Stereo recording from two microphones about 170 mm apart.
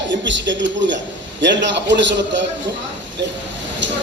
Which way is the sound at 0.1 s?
90° right.